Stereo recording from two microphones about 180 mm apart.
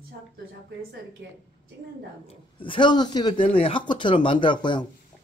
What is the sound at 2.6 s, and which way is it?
Speech, 25° left (ahead or behind).